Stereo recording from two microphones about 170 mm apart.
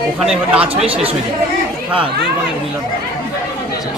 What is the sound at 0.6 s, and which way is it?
Speech, 35° right (ahead or behind).